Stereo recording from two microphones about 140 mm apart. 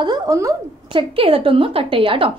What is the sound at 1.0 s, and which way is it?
A woman's voice, 40° right (ahead or behind).